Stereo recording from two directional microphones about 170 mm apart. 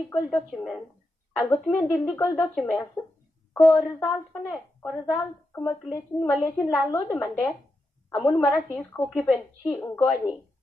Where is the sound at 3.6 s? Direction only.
20° left (ahead or behind).